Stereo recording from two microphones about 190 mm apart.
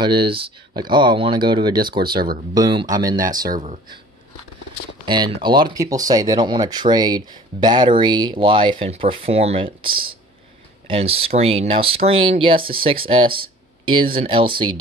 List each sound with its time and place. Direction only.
0.0 s speech: 25° right (ahead or behind)
5.0 s speech: 25° right (ahead or behind)